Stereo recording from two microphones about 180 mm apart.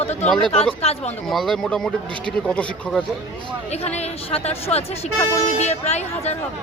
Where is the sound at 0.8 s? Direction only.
35° left (ahead or behind).